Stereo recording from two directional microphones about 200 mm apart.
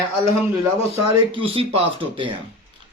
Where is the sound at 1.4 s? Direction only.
25° right (ahead or behind).